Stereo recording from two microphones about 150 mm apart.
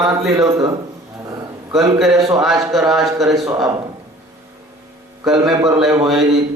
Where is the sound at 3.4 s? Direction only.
25° right (ahead or behind).